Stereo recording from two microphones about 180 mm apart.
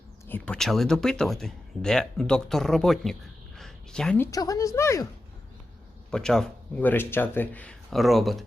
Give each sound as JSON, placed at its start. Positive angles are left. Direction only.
{"t": 0.3, "sound": "speech", "side_deg": 10}
{"t": 4.3, "sound": "speech", "side_deg": 20}
{"t": 6.1, "sound": "speech", "side_deg": 5}